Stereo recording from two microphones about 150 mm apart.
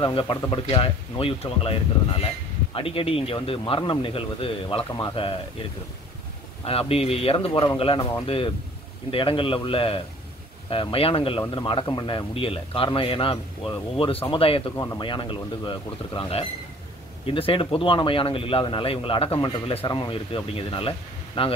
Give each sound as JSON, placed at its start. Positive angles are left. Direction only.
{"t": 0.0, "sound": "speech", "side_deg": 35}
{"t": 6.6, "sound": "speech", "side_deg": 40}